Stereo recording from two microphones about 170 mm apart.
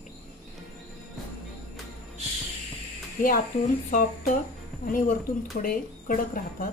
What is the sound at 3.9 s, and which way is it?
Speech, 50° left (ahead or behind).